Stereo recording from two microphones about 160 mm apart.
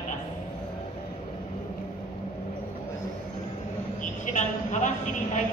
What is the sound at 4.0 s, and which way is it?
A woman's voice, 50° left (ahead or behind).